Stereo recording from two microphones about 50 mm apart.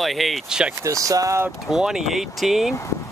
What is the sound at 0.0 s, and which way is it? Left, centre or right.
Speech, centre.